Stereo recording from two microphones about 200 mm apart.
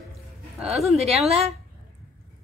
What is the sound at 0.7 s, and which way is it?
Speech, 30° right (ahead or behind).